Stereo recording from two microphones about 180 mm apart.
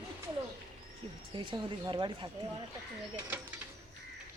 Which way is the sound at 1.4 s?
25° right (ahead or behind).